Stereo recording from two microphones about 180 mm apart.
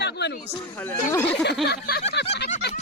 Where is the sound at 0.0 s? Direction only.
70° left (ahead or behind).